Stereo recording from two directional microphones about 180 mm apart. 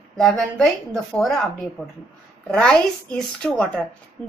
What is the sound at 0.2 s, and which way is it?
A woman's voice, 5° left (ahead or behind).